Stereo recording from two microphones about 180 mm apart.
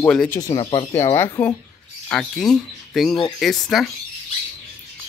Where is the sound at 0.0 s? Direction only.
10° left (ahead or behind).